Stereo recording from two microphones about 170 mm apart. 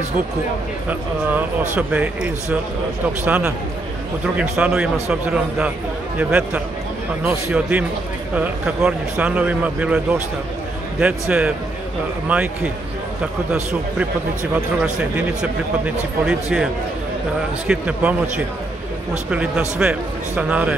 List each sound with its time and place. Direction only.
1.8 s a man's voice: 10° right (ahead or behind)
6.1 s a man's voice: 10° right (ahead or behind)
14.5 s a man's voice: 5° right (ahead or behind)
17.6 s a man's voice: 5° right (ahead or behind)
19.3 s a man's voice: 5° right (ahead or behind)